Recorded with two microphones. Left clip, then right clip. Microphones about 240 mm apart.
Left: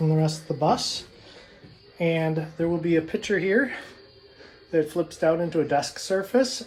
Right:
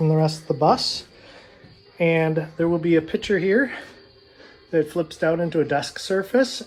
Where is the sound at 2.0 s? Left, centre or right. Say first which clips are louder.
Right 5 dB; right.